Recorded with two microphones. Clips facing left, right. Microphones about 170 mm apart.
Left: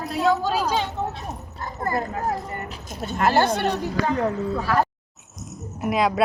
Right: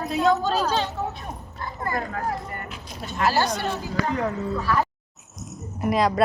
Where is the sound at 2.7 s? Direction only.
45° left (ahead or behind).